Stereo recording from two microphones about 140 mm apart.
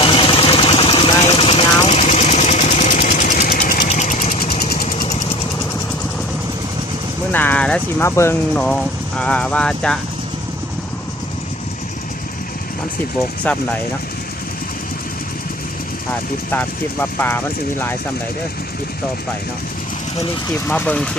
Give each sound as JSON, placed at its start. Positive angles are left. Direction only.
{"t": 0.0, "sound": "vehicle", "side_deg": 40}
{"t": 3.8, "sound": "a sound", "side_deg": 55}
{"t": 4.6, "sound": "jackhammer", "side_deg": 90}
{"t": 7.3, "sound": "vehicle", "side_deg": 10}
{"t": 8.0, "sound": "speech", "side_deg": 20}
{"t": 8.5, "sound": "speech", "side_deg": 5}
{"t": 13.4, "sound": "speech", "side_deg": 10}
{"t": 16.5, "sound": "speech", "side_deg": 15}
{"t": 20.7, "sound": "speech", "side_deg": 10}